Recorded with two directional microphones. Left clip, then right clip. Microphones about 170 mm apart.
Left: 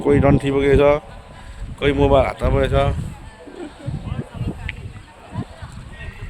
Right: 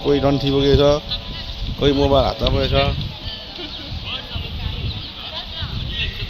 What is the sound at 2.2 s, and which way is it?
Speech, 25° left (ahead or behind).